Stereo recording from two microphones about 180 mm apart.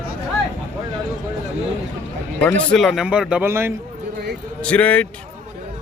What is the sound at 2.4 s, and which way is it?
Speech, 5° left (ahead or behind).